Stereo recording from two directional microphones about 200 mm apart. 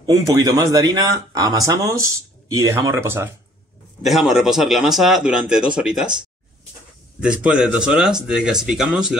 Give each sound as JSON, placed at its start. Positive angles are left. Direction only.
{"t": 0.0, "sound": "speech", "side_deg": -15}
{"t": 4.0, "sound": "speech", "side_deg": 0}
{"t": 7.2, "sound": "speech", "side_deg": -5}